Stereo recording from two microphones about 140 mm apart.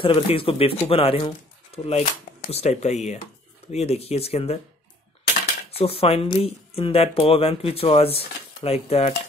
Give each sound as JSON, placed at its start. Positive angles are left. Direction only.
{"t": 0.0, "sound": "speech", "side_deg": 40}
{"t": 5.7, "sound": "speech", "side_deg": 45}